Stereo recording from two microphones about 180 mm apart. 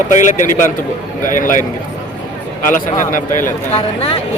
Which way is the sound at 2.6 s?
45° left (ahead or behind).